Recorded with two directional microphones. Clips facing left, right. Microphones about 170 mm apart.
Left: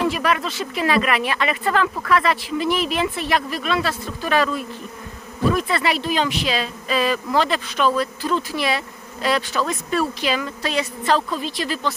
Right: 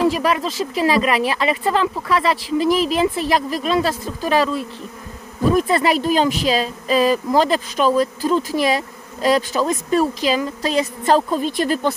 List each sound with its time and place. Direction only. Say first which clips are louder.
0.0 s speech: right 3 dB; 35° right (ahead or behind)
5.5 s speech: right 5 dB; 40° right (ahead or behind)